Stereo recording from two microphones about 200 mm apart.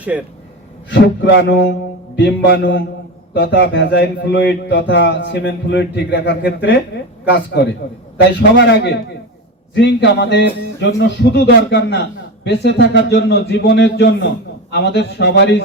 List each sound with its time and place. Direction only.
0.1 s speech: 5° right (ahead or behind)
0.9 s speech: 60° left (ahead or behind)
8.4 s speech: 60° left (ahead or behind)